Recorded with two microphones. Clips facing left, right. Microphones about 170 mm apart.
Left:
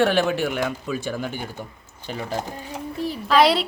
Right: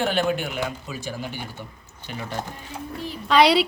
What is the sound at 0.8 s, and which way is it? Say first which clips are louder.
Speech: left 5 dB; 55° left (ahead or behind).